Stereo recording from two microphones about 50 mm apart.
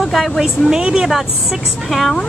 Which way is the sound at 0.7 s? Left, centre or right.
Centre.